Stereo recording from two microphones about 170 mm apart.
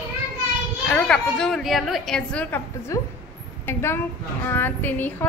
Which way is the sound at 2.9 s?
20° left (ahead or behind).